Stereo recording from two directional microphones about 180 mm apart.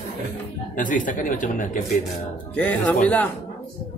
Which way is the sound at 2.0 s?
10° left (ahead or behind).